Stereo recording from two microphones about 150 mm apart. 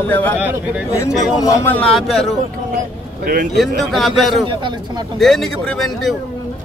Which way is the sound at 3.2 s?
70° right (ahead or behind).